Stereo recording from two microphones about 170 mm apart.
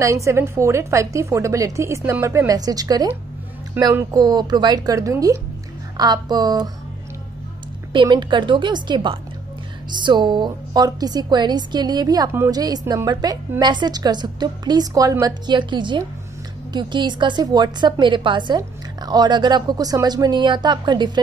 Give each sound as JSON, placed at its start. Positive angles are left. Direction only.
{"t": 0.0, "sound": "a woman's voice", "side_deg": -15}
{"t": 7.9, "sound": "a woman's voice", "side_deg": -25}